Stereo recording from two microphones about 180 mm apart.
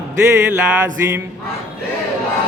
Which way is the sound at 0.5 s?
10° right (ahead or behind).